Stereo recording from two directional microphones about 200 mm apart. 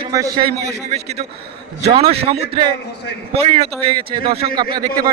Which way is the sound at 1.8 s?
30° right (ahead or behind).